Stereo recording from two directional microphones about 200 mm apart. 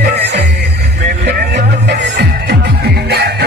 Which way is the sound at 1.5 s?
60° right (ahead or behind).